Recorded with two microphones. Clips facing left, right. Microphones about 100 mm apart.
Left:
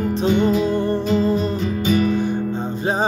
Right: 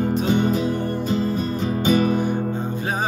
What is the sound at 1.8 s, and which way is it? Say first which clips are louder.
Music: even; 30° right (ahead or behind).